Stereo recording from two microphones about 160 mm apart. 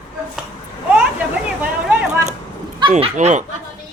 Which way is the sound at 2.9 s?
45° right (ahead or behind).